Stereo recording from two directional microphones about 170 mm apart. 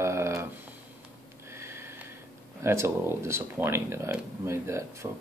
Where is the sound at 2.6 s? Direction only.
15° right (ahead or behind).